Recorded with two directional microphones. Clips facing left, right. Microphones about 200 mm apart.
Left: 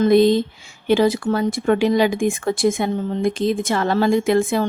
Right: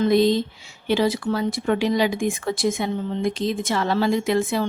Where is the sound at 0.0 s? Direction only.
55° left (ahead or behind).